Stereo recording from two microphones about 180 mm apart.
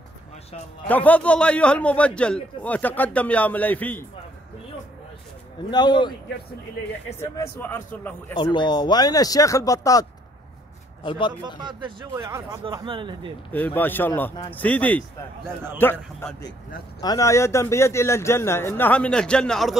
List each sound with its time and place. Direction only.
0.8 s a man's voice: 10° left (ahead or behind)
5.7 s speech: 25° left (ahead or behind)
7.2 s a man's voice: 10° left (ahead or behind)
8.4 s speech: 25° left (ahead or behind)
11.1 s speech: 25° left (ahead or behind)
11.4 s speech: 25° right (ahead or behind)
12.3 s speech: 15° right (ahead or behind)
12.6 s speech: 30° right (ahead or behind)
13.5 s a man's voice: 10° left (ahead or behind)